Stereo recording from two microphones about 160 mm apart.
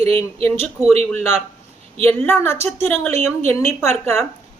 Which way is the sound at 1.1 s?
10° left (ahead or behind).